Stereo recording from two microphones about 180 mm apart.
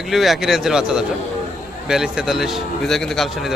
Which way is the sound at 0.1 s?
Centre (ahead or behind).